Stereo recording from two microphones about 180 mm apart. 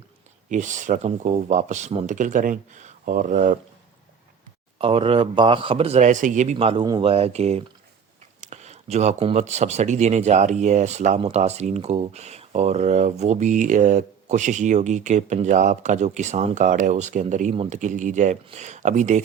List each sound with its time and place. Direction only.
0.4 s speech: 45° right (ahead or behind)
4.8 s speech: 30° right (ahead or behind)
17.5 s speech: 30° right (ahead or behind)
17.7 s speech: 45° right (ahead or behind)